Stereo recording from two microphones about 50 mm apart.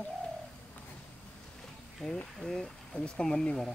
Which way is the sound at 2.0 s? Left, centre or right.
Centre.